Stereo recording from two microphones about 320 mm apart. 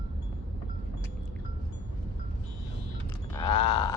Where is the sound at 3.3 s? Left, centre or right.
Centre.